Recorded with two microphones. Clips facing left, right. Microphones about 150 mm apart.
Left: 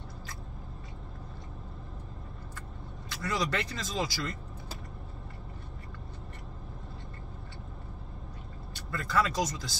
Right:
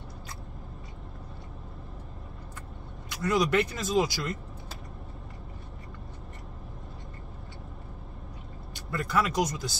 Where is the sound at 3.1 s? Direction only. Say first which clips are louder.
Right 6 dB; 15° right (ahead or behind).